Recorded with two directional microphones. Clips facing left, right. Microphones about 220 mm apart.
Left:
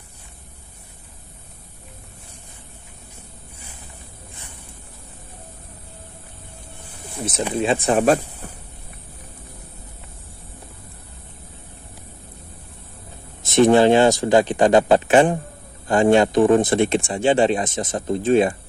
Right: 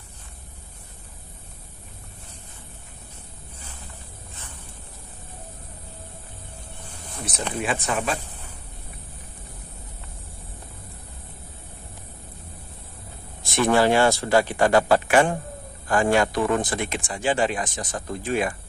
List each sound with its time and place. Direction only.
7.5 s speech: 25° left (ahead or behind)
13.4 s speech: 20° left (ahead or behind)